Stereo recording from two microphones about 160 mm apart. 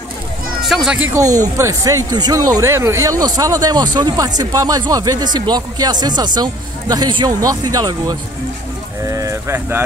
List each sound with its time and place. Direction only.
0.7 s speech: centre (ahead or behind)
1.1 s speech: 20° right (ahead or behind)